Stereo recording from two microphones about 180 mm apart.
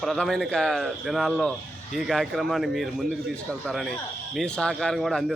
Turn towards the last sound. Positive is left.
turn(degrees=0)  # may be behind; listen again after turning